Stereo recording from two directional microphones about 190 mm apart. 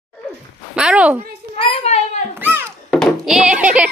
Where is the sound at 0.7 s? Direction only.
5° right (ahead or behind).